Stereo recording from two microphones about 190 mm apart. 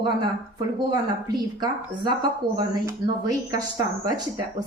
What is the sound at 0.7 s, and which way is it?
A woman's voice, 25° right (ahead or behind).